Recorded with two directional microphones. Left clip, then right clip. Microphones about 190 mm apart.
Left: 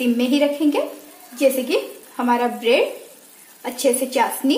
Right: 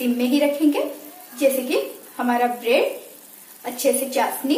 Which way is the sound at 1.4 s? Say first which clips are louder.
Left 1 dB; 45° left (ahead or behind).